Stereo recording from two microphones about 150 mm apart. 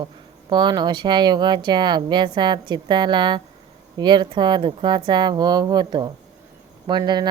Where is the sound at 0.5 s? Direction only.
30° right (ahead or behind).